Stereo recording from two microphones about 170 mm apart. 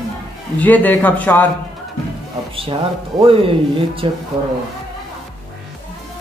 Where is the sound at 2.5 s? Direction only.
35° right (ahead or behind).